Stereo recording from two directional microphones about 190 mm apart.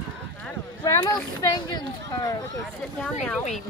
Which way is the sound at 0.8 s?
20° left (ahead or behind).